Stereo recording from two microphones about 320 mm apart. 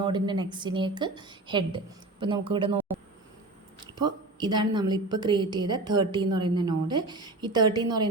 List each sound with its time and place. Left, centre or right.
0.0 s a woman's voice: centre
3.9 s a woman's voice: centre